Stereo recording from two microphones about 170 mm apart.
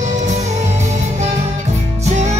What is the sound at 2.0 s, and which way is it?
Music, 40° right (ahead or behind).